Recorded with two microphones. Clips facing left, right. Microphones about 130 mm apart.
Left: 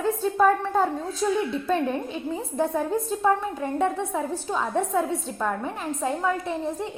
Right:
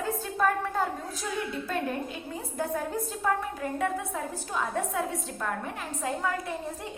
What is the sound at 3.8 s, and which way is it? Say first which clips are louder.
A woman's voice: left 6 dB; 25° left (ahead or behind).